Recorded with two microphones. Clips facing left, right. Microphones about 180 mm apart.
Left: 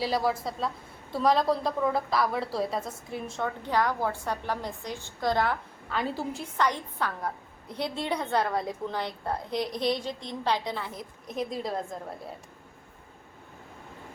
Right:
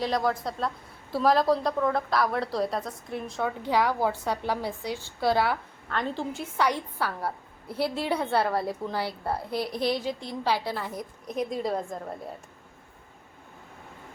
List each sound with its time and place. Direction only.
0.0 s a woman's voice: 5° left (ahead or behind)
3.7 s a woman's voice: 10° right (ahead or behind)
5.9 s a woman's voice: 5° left (ahead or behind)